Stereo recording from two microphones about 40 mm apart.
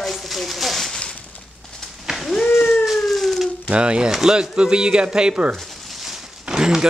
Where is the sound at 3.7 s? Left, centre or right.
Right.